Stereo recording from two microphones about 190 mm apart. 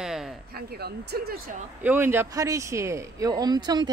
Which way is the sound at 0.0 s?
Centre (ahead or behind).